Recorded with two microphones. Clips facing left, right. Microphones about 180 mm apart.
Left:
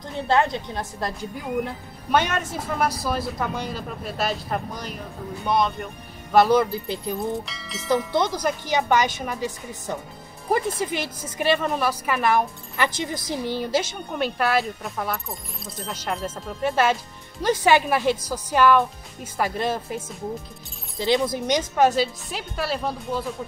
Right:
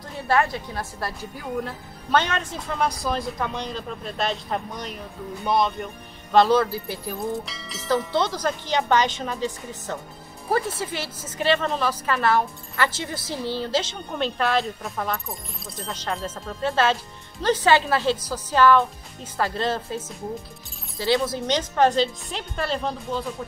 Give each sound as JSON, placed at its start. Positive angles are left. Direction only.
{"t": 0.3, "sound": "a woman's voice", "side_deg": 20}
{"t": 6.3, "sound": "a woman's voice", "side_deg": 15}
{"t": 7.2, "sound": "speech", "side_deg": 0}
{"t": 8.1, "sound": "a woman's voice", "side_deg": 15}
{"t": 21.0, "sound": "a woman's voice", "side_deg": 15}